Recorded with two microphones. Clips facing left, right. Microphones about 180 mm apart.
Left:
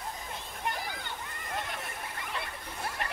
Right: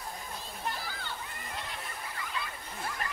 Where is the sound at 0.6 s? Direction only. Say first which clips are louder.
Left 3 dB; 20° left (ahead or behind).